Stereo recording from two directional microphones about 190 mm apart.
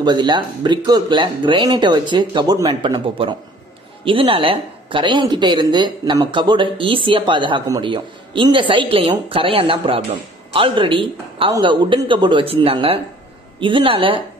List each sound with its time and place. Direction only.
0.0 s speech: 25° right (ahead or behind)